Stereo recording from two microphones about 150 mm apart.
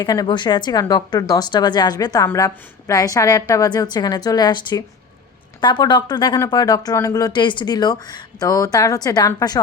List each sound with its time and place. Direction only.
0.0 s speech: 25° left (ahead or behind)